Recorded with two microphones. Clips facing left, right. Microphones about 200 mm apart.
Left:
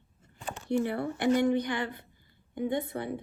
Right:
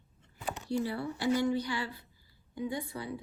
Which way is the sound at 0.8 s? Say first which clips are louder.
Left 3 dB; 60° left (ahead or behind).